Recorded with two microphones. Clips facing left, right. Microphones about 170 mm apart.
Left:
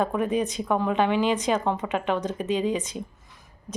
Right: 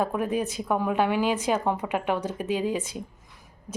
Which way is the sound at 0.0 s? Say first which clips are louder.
Left 2 dB; 5° right (ahead or behind).